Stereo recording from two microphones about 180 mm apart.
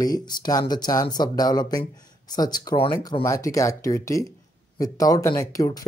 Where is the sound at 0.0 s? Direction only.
20° left (ahead or behind).